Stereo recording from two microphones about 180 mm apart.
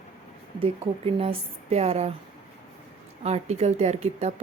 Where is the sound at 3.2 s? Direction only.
35° right (ahead or behind).